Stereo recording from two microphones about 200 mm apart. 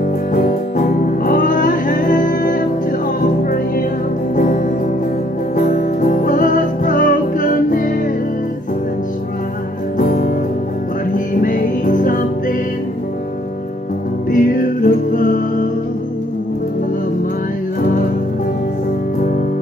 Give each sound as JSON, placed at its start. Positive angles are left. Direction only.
{"t": 0.0, "sound": "music", "side_deg": 40}
{"t": 9.9, "sound": "music", "side_deg": 45}
{"t": 14.3, "sound": "music", "side_deg": 40}